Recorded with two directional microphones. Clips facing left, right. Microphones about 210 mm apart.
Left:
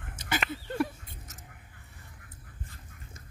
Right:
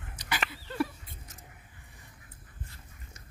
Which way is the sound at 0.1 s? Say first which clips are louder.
Left 4 dB; 50° left (ahead or behind).